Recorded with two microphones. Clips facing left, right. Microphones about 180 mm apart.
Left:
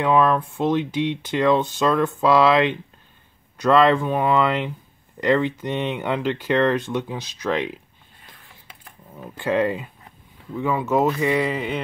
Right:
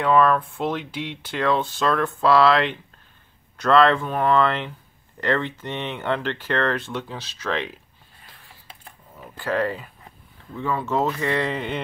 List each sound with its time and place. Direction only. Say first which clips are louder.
0.0 s speech: even; 15° left (ahead or behind)
9.4 s speech: left 3 dB; 20° left (ahead or behind); by 11.8 s 5° left (ahead or behind)